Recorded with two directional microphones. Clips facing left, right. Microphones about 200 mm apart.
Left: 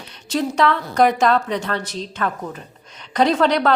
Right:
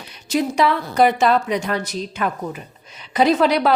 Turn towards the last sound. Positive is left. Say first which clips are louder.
# right 1 dB
turn(degrees=-10)  # may be behind; listen again after turning